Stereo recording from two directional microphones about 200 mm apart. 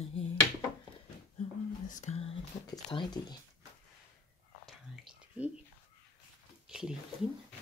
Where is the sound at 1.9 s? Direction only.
35° left (ahead or behind).